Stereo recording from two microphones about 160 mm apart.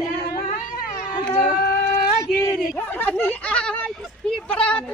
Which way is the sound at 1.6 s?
70° left (ahead or behind).